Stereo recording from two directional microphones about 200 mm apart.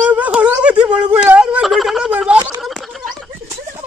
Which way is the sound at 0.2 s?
5° right (ahead or behind).